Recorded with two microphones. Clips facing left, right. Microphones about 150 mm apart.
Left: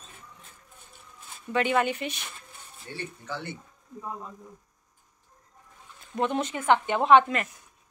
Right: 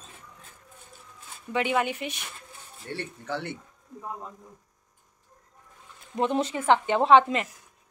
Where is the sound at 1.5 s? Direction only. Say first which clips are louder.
Left 1 dB; 10° right (ahead or behind).